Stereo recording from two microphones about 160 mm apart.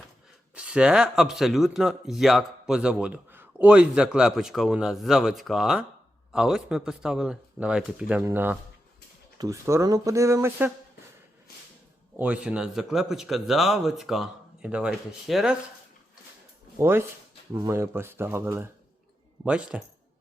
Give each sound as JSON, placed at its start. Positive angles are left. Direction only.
{"t": 0.5, "sound": "speech", "side_deg": -5}
{"t": 12.1, "sound": "speech", "side_deg": -10}
{"t": 16.7, "sound": "speech", "side_deg": -15}